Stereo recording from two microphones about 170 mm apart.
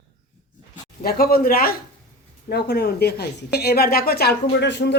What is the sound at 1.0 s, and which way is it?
Speech, 60° left (ahead or behind).